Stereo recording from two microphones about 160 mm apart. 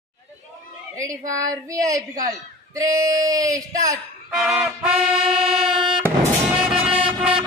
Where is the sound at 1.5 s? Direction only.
20° right (ahead or behind).